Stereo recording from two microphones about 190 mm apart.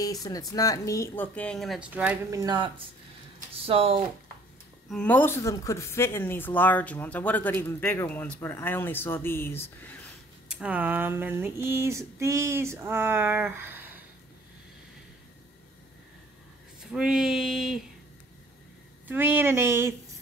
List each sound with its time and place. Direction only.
0.0 s speech: 20° left (ahead or behind); by 2.1 s 5° right (ahead or behind)
2.3 s speech: 20° right (ahead or behind)
4.8 s speech: 5° left (ahead or behind)
10.5 s a sound: 5° right (ahead or behind)
16.9 s speech: 5° right (ahead or behind)
19.0 s a sound: 10° right (ahead or behind)